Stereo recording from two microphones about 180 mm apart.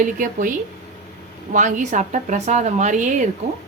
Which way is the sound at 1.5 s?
45° right (ahead or behind).